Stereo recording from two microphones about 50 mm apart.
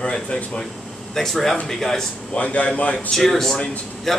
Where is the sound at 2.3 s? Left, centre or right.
Left.